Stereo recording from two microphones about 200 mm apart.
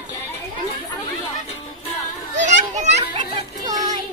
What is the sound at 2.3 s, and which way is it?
Children playing, 35° right (ahead or behind).